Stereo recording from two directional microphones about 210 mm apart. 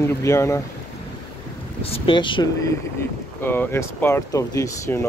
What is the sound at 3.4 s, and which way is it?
Speech, 10° left (ahead or behind).